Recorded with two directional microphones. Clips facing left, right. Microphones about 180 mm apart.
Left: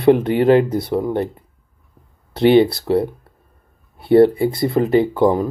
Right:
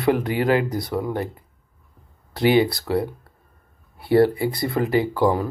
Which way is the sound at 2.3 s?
25° left (ahead or behind).